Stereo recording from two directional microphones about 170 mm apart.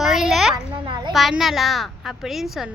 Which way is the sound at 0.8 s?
25° right (ahead or behind).